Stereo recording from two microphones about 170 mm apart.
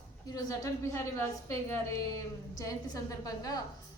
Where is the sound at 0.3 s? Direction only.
20° left (ahead or behind).